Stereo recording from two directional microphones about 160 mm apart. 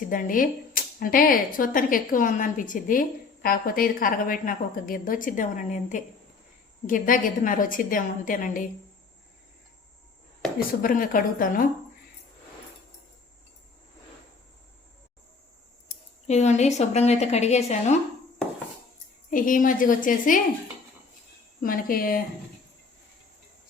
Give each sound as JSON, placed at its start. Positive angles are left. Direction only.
{"t": 0.1, "sound": "speech", "side_deg": 60}
{"t": 10.8, "sound": "speech", "side_deg": 60}
{"t": 16.2, "sound": "a woman's voice", "side_deg": 45}
{"t": 19.3, "sound": "speech", "side_deg": 55}
{"t": 21.6, "sound": "speech", "side_deg": 60}